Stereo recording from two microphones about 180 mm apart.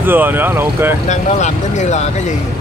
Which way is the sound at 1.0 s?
40° left (ahead or behind).